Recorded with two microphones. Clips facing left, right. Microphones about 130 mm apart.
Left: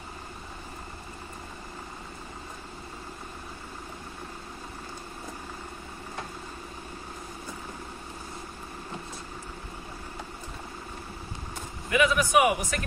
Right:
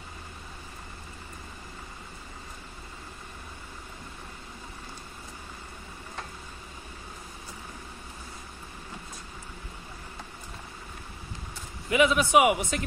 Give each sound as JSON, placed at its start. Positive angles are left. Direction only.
{"t": 11.9, "sound": "a man's voice", "side_deg": -20}